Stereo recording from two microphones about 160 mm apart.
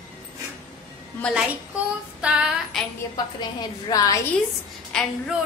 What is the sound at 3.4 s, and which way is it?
Speech, 25° left (ahead or behind).